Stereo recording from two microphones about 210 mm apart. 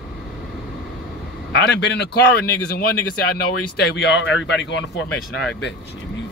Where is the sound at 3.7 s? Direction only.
55° left (ahead or behind).